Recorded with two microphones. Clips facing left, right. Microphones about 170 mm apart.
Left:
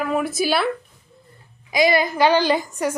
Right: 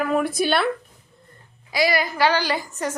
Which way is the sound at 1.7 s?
20° left (ahead or behind).